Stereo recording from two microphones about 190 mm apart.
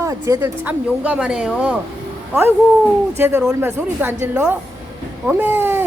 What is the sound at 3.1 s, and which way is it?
Speech, 10° right (ahead or behind).